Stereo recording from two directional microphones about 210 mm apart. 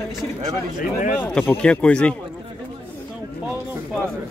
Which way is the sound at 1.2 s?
5° left (ahead or behind).